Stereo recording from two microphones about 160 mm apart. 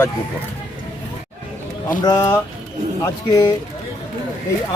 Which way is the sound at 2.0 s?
20° left (ahead or behind).